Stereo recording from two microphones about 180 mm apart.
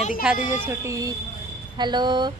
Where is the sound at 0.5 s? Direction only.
15° right (ahead or behind).